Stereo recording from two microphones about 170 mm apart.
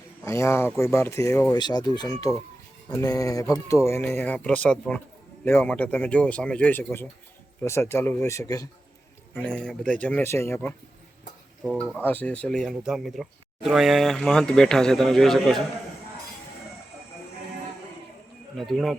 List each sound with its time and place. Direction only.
0.3 s speech: 15° left (ahead or behind)
9.4 s speech: 5° left (ahead or behind)
11.6 s speech: 5° right (ahead or behind)
11.9 s speech: 10° left (ahead or behind)
18.5 s speech: centre (ahead or behind)